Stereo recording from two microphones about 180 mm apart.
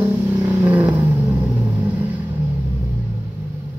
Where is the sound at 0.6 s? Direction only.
15° right (ahead or behind).